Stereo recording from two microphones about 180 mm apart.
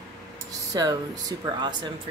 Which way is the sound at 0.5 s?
20° right (ahead or behind).